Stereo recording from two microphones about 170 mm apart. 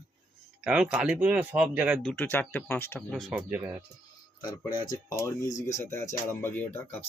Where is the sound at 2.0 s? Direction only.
10° left (ahead or behind).